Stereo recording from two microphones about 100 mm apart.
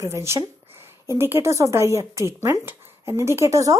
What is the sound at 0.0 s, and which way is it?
A woman's voice, 25° right (ahead or behind).